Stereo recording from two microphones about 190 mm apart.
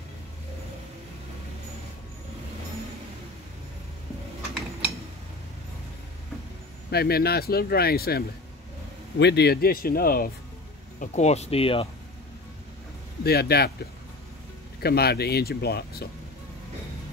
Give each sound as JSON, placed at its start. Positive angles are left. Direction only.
{"t": 6.9, "sound": "speech", "side_deg": 55}
{"t": 11.0, "sound": "speech", "side_deg": 35}
{"t": 13.2, "sound": "speech", "side_deg": 55}
{"t": 14.8, "sound": "speech", "side_deg": 55}